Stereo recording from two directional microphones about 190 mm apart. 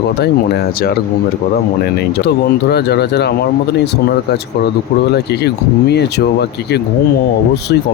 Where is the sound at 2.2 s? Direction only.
60° left (ahead or behind).